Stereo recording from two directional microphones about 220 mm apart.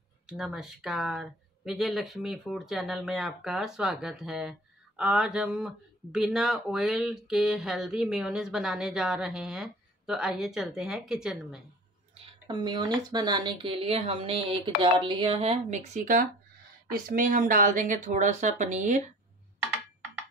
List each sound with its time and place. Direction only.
0.3 s speech: centre (ahead or behind)
12.4 s speech: 20° right (ahead or behind)